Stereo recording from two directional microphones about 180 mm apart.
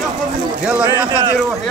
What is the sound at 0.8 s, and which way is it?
Speech, 25° right (ahead or behind).